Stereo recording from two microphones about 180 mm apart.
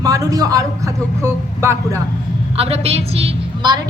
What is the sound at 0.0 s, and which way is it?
A man's voice, 20° right (ahead or behind).